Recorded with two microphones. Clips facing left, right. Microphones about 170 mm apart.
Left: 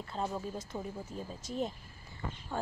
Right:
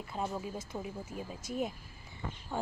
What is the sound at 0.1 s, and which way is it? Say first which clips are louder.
A child's voice: even; 10° right (ahead or behind).